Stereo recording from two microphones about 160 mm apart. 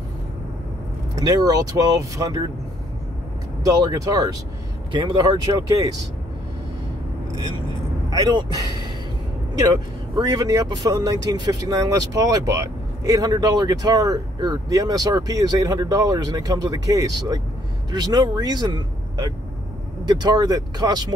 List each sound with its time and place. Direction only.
1.1 s speech: 25° right (ahead or behind)
3.6 s speech: 20° right (ahead or behind)
8.1 s speech: 25° right (ahead or behind)
10.1 s speech: 25° right (ahead or behind)